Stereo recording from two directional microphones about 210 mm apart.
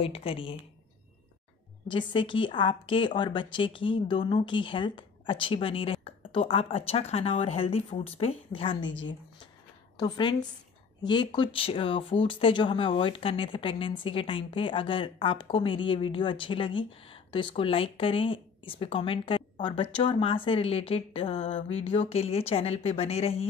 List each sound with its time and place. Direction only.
0.0 s speech: 25° left (ahead or behind)
1.9 s speech: 25° left (ahead or behind)
9.9 s speech: 20° left (ahead or behind)